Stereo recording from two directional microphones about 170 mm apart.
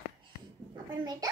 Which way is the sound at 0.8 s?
25° right (ahead or behind).